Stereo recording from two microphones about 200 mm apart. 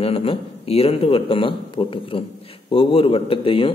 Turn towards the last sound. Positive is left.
turn(degrees=25)  # may be behind; listen again after turning